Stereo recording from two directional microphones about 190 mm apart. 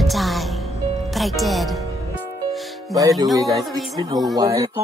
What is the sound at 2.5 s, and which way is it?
Music, centre (ahead or behind).